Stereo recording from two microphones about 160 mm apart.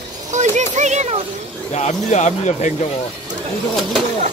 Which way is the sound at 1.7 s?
45° left (ahead or behind).